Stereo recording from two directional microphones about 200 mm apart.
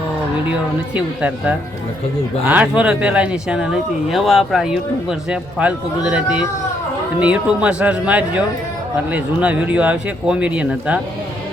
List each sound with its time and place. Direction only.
0.9 s speech: 5° right (ahead or behind)